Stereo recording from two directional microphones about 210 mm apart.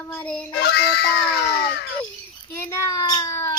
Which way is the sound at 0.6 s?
55° left (ahead or behind).